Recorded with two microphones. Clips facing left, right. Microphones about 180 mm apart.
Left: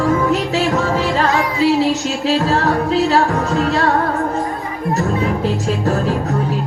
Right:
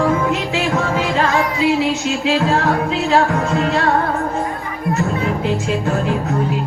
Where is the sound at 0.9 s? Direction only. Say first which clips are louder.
Left 1 dB; 40° left (ahead or behind).